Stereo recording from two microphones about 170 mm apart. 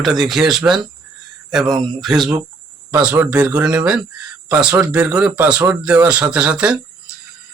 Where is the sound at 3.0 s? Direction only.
10° right (ahead or behind).